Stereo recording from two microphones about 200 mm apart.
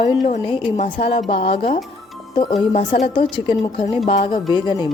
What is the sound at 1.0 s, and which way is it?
Speech, 30° left (ahead or behind).